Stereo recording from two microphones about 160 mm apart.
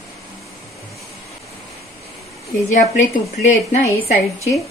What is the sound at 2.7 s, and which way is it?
A woman's voice, 50° left (ahead or behind).